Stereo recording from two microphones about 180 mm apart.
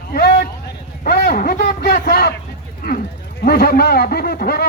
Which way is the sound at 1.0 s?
60° left (ahead or behind).